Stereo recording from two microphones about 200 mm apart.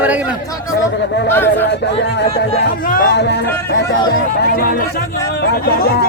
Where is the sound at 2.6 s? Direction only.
45° left (ahead or behind).